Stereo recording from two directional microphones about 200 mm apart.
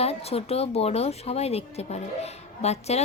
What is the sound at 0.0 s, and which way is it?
Speech, 30° left (ahead or behind).